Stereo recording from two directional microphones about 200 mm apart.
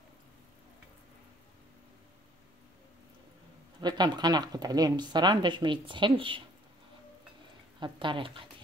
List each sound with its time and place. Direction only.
3.8 s speech: 20° right (ahead or behind)
7.8 s speech: 25° right (ahead or behind)